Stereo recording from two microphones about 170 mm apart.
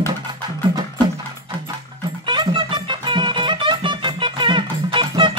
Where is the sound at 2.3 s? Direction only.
25° right (ahead or behind).